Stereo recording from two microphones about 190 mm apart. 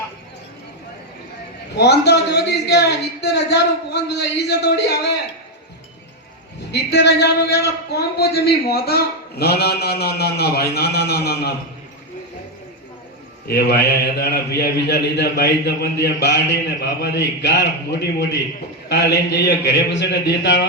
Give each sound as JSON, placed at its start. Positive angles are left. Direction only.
{"t": 1.7, "sound": "a man's voice", "side_deg": 60}
{"t": 6.7, "sound": "a man's voice", "side_deg": 60}
{"t": 13.5, "sound": "a man's voice", "side_deg": 55}